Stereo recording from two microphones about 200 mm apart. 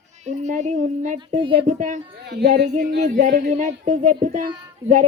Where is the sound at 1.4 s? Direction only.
25° right (ahead or behind).